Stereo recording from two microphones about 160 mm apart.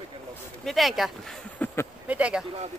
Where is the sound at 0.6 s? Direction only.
Centre (ahead or behind).